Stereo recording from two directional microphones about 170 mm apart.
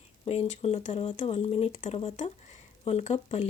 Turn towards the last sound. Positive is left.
turn(degrees=40)  # may be behind; listen again after turning